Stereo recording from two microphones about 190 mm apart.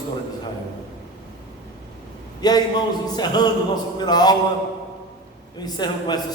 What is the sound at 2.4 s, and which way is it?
A man's voice, 20° left (ahead or behind).